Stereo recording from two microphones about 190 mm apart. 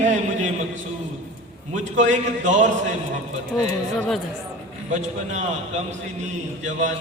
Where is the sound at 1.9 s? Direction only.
40° right (ahead or behind).